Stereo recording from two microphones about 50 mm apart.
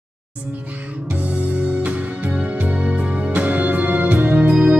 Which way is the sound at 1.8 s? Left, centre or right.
Right.